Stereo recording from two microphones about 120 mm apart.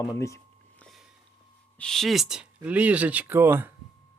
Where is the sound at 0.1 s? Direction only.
25° left (ahead or behind).